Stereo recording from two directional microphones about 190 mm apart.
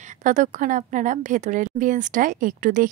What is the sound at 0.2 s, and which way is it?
Speech, 40° right (ahead or behind).